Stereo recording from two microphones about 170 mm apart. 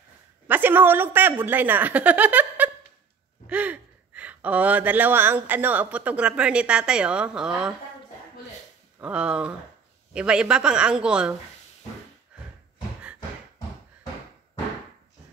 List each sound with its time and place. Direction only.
0.5 s a woman's voice: 10° right (ahead or behind)
9.0 s a woman's voice: 5° right (ahead or behind)